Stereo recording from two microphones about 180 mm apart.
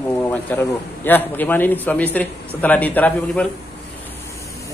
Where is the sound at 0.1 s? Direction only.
10° left (ahead or behind).